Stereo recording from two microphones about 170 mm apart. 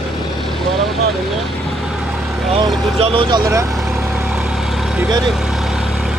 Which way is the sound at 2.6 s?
30° right (ahead or behind).